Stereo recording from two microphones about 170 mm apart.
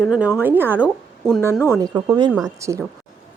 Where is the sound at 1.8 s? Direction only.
25° right (ahead or behind).